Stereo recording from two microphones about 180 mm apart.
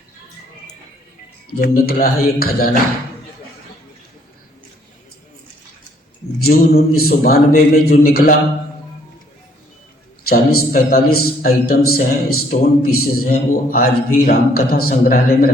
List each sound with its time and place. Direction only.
1.5 s a man's voice: 55° left (ahead or behind)
6.4 s a man's voice: 55° left (ahead or behind)
10.2 s a man's voice: 55° left (ahead or behind)